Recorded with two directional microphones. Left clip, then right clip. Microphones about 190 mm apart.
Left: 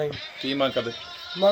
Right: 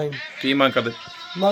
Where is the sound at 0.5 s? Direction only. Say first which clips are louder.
Right 6 dB; 30° right (ahead or behind).